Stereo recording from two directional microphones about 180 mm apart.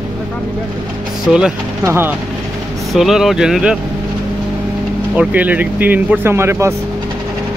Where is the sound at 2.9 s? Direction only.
Centre (ahead or behind).